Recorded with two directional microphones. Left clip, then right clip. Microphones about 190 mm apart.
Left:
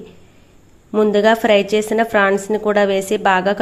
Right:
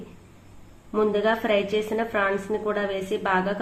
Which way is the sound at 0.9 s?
40° left (ahead or behind).